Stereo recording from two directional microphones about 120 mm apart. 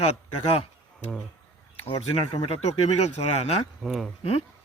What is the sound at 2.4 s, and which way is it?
Speech, 60° left (ahead or behind).